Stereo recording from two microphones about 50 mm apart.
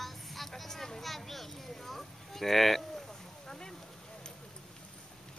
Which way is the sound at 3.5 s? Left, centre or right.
Centre.